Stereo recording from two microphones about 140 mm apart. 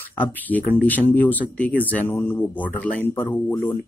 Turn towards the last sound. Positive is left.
turn(degrees=15)  # may be behind; listen again after turning